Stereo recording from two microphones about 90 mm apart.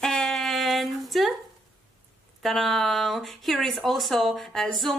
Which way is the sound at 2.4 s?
Centre (ahead or behind).